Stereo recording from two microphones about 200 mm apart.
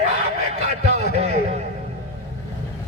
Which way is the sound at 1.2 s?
30° right (ahead or behind).